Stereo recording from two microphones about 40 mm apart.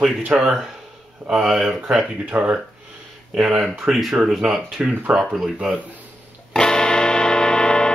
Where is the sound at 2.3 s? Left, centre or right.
Right.